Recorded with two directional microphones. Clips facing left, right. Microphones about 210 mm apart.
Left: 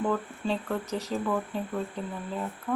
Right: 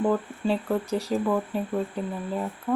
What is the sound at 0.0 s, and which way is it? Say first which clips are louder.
Speech: right 4 dB; 10° right (ahead or behind).